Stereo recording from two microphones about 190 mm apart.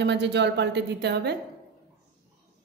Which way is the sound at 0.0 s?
65° right (ahead or behind).